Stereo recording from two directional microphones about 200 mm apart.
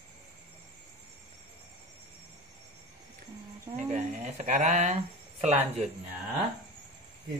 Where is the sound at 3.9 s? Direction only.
35° right (ahead or behind).